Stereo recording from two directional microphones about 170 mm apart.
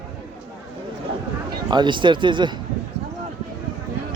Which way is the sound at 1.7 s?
25° right (ahead or behind).